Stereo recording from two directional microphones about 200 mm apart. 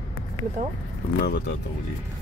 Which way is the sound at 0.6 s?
40° right (ahead or behind).